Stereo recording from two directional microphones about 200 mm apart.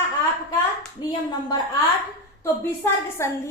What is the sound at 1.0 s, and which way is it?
Speech, 20° left (ahead or behind).